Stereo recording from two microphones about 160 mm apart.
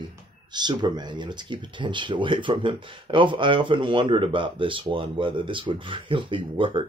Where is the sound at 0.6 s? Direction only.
25° right (ahead or behind).